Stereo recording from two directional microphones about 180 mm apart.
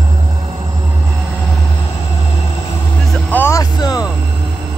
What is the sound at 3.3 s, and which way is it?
Music, 15° left (ahead or behind).